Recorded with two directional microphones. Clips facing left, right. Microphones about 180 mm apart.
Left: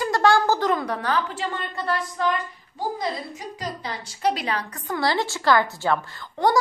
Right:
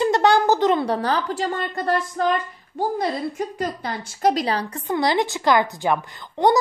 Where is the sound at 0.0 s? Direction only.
20° right (ahead or behind); by 2.2 s 45° right (ahead or behind).